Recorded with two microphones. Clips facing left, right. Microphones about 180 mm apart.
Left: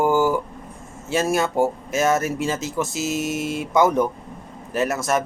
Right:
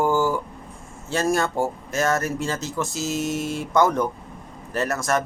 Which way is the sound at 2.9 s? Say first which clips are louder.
Left 2 dB; 75° left (ahead or behind).